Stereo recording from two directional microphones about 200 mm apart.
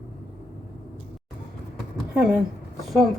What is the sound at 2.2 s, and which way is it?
Speech, 5° right (ahead or behind).